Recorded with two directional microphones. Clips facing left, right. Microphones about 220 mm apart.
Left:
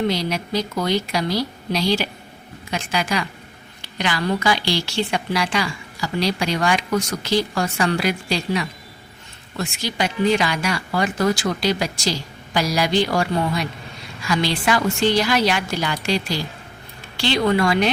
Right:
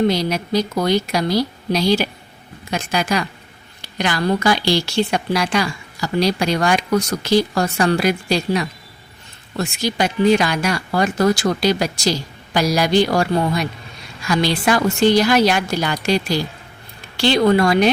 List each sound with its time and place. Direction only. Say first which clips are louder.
0.1 s a woman's voice: right 4 dB; 45° right (ahead or behind)
17.2 s speech: right 4 dB; 45° right (ahead or behind)